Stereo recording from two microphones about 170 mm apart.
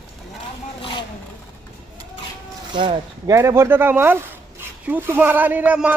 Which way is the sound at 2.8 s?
30° right (ahead or behind).